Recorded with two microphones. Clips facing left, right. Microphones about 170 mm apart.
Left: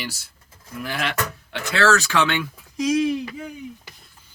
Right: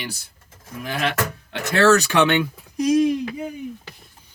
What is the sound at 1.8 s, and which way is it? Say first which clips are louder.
Speech: right 4 dB; 20° right (ahead or behind).